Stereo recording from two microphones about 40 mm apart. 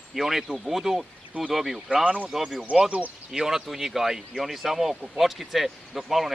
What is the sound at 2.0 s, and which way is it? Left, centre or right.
Speech, right.